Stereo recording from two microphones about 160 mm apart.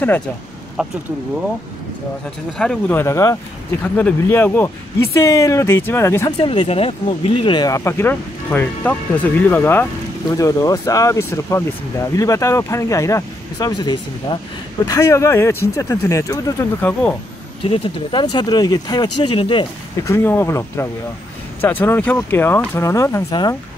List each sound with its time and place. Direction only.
0.8 s speech: 5° right (ahead or behind)
2.5 s speech: 5° left (ahead or behind)
6.4 s speech: 35° left (ahead or behind); by 16.9 s 20° left (ahead or behind)
17.6 s speech: 35° left (ahead or behind)
20.0 s speech: 15° left (ahead or behind)